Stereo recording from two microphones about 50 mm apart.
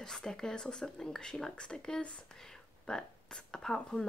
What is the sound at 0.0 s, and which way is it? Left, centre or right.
Speech, centre.